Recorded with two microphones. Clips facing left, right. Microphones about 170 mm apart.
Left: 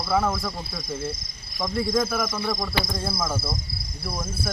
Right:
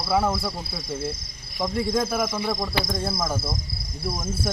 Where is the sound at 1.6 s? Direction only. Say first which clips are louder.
Even; 5° right (ahead or behind).